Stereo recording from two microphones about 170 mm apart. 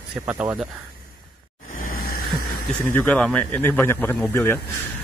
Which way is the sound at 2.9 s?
10° left (ahead or behind).